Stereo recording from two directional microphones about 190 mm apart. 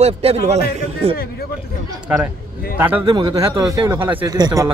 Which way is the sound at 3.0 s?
20° right (ahead or behind).